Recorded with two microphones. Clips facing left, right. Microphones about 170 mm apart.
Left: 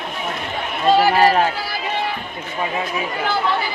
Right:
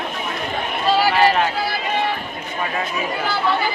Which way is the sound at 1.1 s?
40° left (ahead or behind).